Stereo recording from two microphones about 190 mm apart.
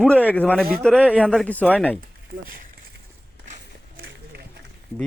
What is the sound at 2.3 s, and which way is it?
Speech, 50° right (ahead or behind).